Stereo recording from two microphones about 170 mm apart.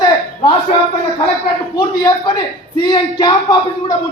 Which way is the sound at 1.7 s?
20° left (ahead or behind).